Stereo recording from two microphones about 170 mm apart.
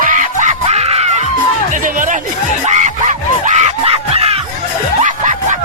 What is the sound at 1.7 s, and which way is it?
Music, 50° right (ahead or behind).